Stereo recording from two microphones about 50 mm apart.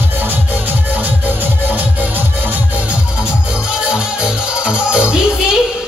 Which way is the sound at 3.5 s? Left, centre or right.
Centre.